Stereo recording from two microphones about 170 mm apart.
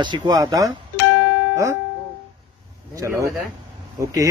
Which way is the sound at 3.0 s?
15° right (ahead or behind).